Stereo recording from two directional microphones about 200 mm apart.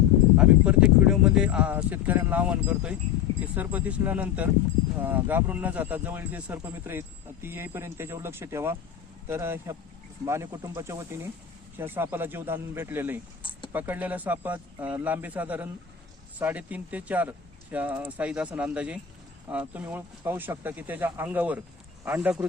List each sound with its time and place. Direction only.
0.3 s speech: 5° right (ahead or behind)